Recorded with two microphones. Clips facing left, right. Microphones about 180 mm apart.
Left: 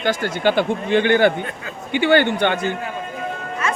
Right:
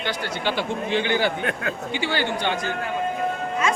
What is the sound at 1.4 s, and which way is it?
Speech, 70° right (ahead or behind).